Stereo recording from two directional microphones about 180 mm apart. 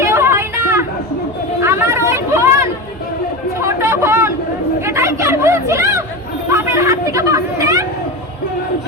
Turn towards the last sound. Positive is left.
turn(degrees=-20)  # may be behind; listen again after turning